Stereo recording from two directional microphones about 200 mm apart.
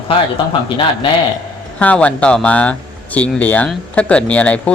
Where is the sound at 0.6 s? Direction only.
25° left (ahead or behind).